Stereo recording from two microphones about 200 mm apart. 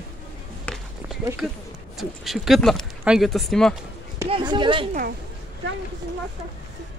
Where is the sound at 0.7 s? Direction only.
5° left (ahead or behind).